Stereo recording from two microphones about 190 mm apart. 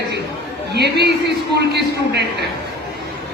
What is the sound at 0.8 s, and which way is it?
Speech, 60° right (ahead or behind).